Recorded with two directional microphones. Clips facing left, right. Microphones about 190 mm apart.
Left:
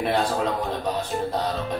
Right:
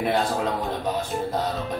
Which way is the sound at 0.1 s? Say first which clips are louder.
Even; centre (ahead or behind).